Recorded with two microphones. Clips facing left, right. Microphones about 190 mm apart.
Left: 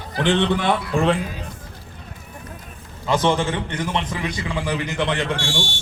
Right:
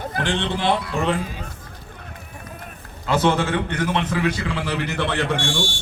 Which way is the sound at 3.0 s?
15° left (ahead or behind).